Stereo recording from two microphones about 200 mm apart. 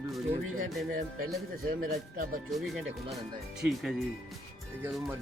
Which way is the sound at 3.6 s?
Centre (ahead or behind).